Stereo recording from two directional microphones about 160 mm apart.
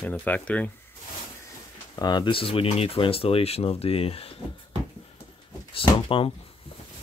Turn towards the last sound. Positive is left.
turn(degrees=35)  # may be behind; listen again after turning